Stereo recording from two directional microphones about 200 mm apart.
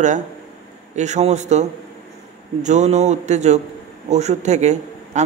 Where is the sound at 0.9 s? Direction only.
35° right (ahead or behind).